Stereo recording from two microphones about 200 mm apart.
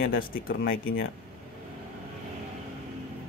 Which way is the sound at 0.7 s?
75° left (ahead or behind).